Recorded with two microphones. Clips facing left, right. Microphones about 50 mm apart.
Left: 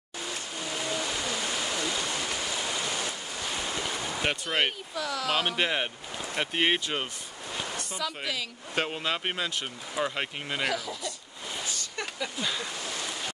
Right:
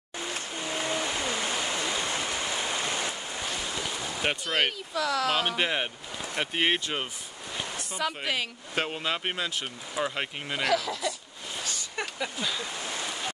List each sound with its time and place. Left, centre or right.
0.2 s a sound: right
4.2 s speech: centre
4.9 s speech: right
5.6 s speech: centre
8.0 s speech: right
8.7 s speech: centre
10.7 s speech: right
11.8 s a sound: centre
12.4 s speech: centre